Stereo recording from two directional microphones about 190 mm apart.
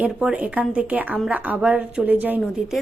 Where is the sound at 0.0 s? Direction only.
5° right (ahead or behind).